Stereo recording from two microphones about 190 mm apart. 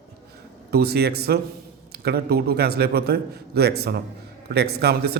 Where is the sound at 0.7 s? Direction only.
55° right (ahead or behind).